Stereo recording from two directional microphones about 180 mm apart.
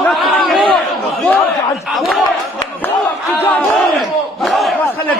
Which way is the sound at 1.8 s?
Centre (ahead or behind).